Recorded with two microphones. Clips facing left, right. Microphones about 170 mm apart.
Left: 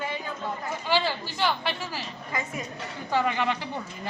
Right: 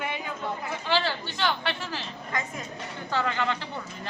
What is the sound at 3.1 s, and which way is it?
Speech, 10° left (ahead or behind).